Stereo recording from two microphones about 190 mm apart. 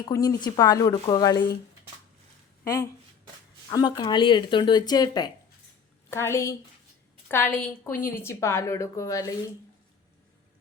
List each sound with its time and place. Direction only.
0.0 s speech: 20° left (ahead or behind)
2.6 s a woman's voice: 15° left (ahead or behind)